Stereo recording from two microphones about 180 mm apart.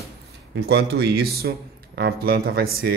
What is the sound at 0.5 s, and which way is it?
Speech, 65° right (ahead or behind).